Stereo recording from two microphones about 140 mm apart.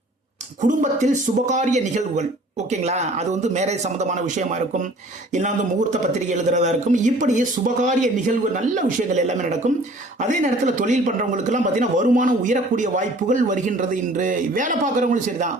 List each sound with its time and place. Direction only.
0.6 s speech: 60° right (ahead or behind)